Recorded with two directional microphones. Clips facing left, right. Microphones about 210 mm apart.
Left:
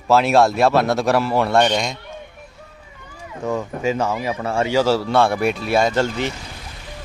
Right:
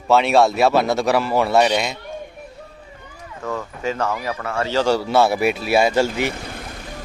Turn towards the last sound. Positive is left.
turn(degrees=-10)  # may be behind; listen again after turning